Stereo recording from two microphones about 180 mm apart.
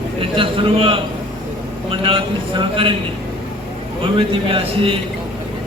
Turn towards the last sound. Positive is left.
turn(degrees=-30)  # may be behind; listen again after turning